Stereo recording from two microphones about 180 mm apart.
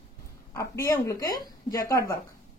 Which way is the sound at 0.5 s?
15° left (ahead or behind).